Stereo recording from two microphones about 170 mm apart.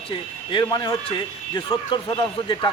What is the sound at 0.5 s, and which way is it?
Speech, 25° left (ahead or behind).